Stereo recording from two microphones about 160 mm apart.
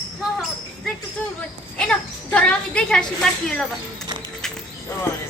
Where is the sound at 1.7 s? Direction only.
5° left (ahead or behind).